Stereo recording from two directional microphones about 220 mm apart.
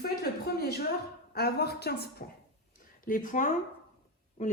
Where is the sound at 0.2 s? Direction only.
45° left (ahead or behind).